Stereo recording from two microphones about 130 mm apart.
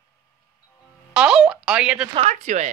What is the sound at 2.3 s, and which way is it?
Speech, 70° right (ahead or behind).